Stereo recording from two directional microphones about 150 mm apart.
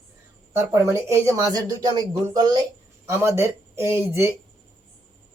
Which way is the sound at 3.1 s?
15° right (ahead or behind).